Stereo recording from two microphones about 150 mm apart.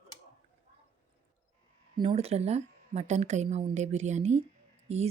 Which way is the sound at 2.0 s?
40° right (ahead or behind).